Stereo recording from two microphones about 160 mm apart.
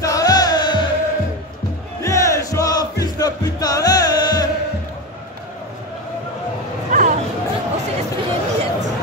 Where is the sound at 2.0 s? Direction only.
20° left (ahead or behind).